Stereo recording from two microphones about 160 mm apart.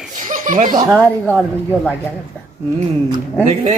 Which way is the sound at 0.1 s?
55° right (ahead or behind).